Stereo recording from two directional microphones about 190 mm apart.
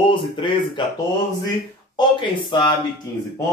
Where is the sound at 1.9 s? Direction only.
25° left (ahead or behind).